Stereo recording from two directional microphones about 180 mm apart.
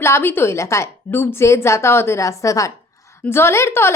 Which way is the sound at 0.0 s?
15° left (ahead or behind).